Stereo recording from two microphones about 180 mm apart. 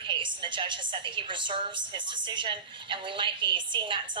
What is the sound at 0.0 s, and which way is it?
A woman's voice, 25° right (ahead or behind).